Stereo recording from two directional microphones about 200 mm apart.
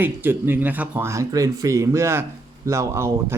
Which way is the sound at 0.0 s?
10° right (ahead or behind).